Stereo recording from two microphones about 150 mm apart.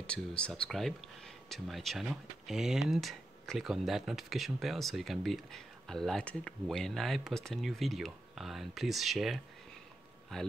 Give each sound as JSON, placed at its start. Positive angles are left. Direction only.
{"t": 0.0, "sound": "speech", "side_deg": 5}